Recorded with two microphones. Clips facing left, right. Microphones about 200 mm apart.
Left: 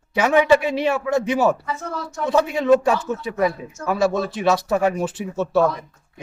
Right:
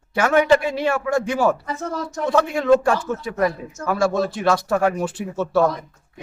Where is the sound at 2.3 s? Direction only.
10° left (ahead or behind).